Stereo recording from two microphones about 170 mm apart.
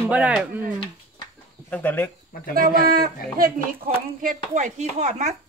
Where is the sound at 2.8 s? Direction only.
60° right (ahead or behind).